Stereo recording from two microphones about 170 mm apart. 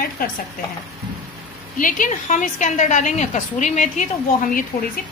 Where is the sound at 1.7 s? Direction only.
50° left (ahead or behind).